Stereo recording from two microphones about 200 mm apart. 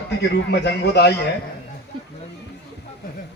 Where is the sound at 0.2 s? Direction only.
55° left (ahead or behind).